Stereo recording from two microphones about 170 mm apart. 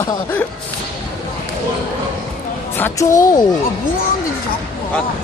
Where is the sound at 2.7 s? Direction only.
15° left (ahead or behind).